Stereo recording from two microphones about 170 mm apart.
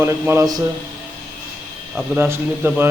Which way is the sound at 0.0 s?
15° right (ahead or behind).